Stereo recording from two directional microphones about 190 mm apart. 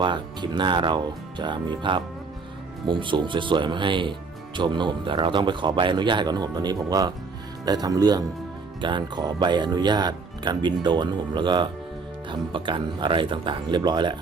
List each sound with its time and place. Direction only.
0.0 s speech: 25° right (ahead or behind)